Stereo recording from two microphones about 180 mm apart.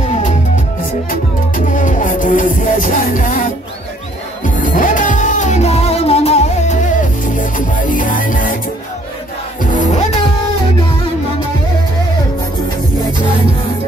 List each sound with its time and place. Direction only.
1.7 s music: 45° left (ahead or behind)
4.6 s music: 50° left (ahead or behind)
9.6 s music: 45° left (ahead or behind)